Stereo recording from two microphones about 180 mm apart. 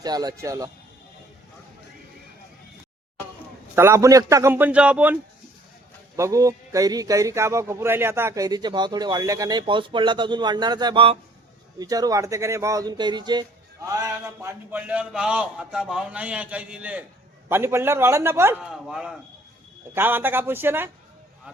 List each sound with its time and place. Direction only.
0.0 s a man's voice: 20° right (ahead or behind)
3.8 s a man's voice: 15° right (ahead or behind)
6.1 s a man's voice: 15° right (ahead or behind)
14.0 s a man's voice: 10° right (ahead or behind)
18.7 s a man's voice: 5° right (ahead or behind)